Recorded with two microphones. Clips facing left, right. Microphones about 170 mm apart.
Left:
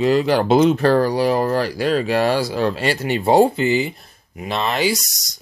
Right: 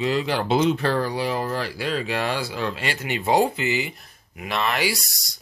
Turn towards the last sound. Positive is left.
turn(degrees=20)  # may be behind; listen again after turning